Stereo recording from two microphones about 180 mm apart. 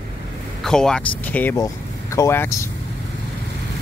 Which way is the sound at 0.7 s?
5° left (ahead or behind).